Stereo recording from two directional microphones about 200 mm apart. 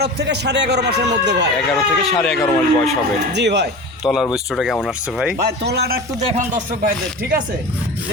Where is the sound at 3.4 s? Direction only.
60° right (ahead or behind).